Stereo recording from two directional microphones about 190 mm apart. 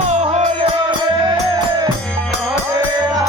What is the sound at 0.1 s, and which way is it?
Music, 35° right (ahead or behind).